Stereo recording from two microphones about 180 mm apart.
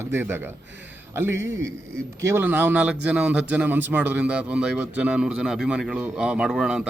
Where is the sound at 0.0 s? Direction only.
10° right (ahead or behind).